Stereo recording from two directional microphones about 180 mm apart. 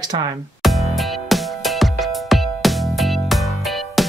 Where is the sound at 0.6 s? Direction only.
Centre (ahead or behind).